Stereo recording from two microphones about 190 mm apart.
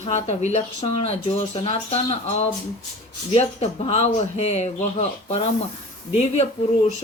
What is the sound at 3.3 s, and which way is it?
Speech, 35° left (ahead or behind).